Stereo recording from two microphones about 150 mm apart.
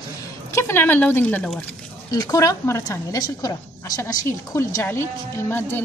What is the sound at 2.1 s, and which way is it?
A woman's voice, 20° left (ahead or behind).